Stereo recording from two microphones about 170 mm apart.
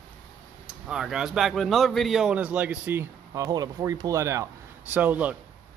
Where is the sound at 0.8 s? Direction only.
5° right (ahead or behind).